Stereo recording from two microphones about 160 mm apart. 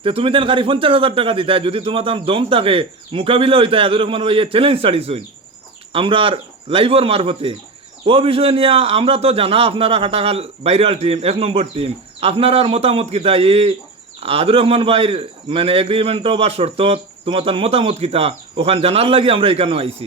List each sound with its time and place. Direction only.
0.0 s a man's voice: 35° right (ahead or behind)